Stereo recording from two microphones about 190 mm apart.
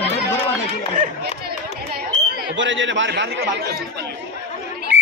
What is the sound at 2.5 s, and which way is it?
A man's voice, 75° right (ahead or behind).